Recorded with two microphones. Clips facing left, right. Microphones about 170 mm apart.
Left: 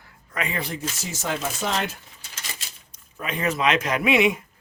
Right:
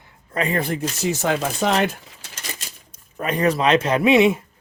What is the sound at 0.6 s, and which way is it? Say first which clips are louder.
Speech: right 7 dB; 55° right (ahead or behind).